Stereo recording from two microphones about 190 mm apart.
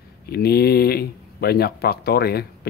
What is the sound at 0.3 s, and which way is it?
Speech, 55° left (ahead or behind).